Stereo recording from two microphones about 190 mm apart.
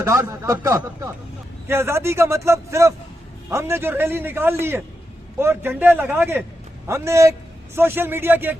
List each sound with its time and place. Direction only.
0.0 s a man's voice: 15° right (ahead or behind)